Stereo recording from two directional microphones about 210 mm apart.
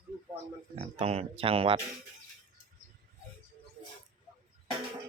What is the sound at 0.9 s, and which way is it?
Speech, 30° right (ahead or behind).